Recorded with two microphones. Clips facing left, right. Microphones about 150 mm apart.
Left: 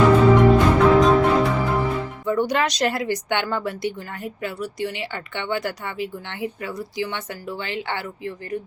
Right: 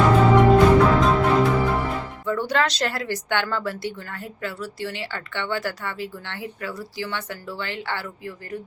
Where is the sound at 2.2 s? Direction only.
15° left (ahead or behind).